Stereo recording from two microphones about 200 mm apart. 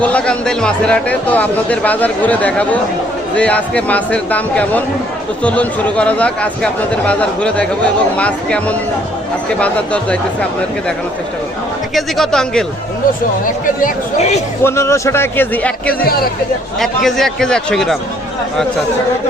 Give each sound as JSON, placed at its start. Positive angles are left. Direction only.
{"t": 0.0, "sound": "a man's voice", "side_deg": 5}
{"t": 11.9, "sound": "a man's voice", "side_deg": 0}
{"t": 13.8, "sound": "a man's voice", "side_deg": 35}
{"t": 14.6, "sound": "a man's voice", "side_deg": 15}